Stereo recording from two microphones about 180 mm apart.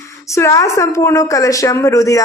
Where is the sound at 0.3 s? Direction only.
15° left (ahead or behind).